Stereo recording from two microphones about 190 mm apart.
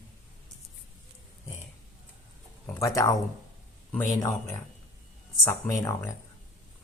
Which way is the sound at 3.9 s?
15° left (ahead or behind).